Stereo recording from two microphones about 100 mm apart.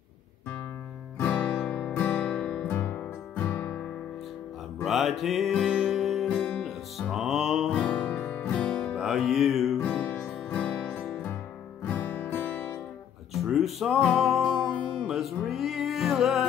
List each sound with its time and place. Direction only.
1.1 s music: 15° left (ahead or behind)
4.8 s music: centre (ahead or behind)
6.2 s music: 10° left (ahead or behind)
6.6 s music: centre (ahead or behind)
7.7 s music: 15° left (ahead or behind)
8.9 s music: 5° right (ahead or behind)
9.8 s music: 15° left (ahead or behind)
13.3 s music: centre (ahead or behind)